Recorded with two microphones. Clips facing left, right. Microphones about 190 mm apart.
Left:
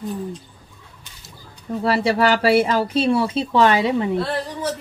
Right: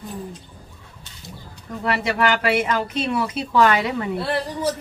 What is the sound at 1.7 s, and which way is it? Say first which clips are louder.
Speech: left 5 dB; 30° left (ahead or behind).